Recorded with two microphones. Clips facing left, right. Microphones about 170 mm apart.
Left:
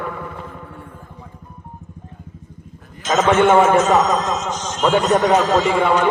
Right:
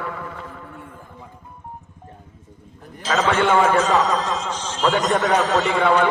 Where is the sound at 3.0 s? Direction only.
35° right (ahead or behind).